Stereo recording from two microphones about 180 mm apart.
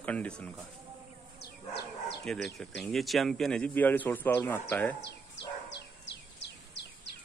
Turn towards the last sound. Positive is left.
turn(degrees=75)  # may be behind; listen again after turning